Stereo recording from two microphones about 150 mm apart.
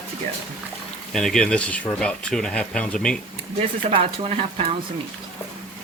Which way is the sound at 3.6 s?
40° right (ahead or behind).